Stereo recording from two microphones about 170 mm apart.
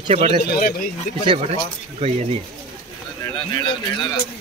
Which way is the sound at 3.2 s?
25° left (ahead or behind).